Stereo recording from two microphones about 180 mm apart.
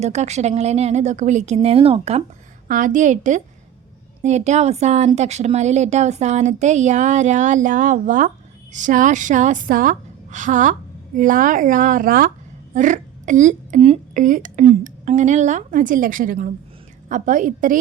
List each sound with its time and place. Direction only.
0.0 s speech: 40° right (ahead or behind)
2.6 s a woman's voice: 45° right (ahead or behind)
12.7 s a sound: 45° right (ahead or behind)
14.1 s a woman's voice: 45° right (ahead or behind)